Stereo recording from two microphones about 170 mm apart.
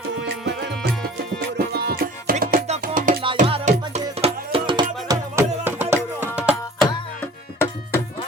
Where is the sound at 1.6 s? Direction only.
65° right (ahead or behind).